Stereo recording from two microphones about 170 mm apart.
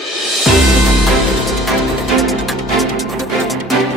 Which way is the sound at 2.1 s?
Centre (ahead or behind).